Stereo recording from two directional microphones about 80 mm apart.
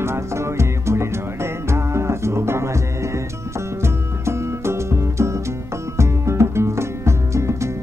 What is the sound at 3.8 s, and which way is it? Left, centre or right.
Music, right.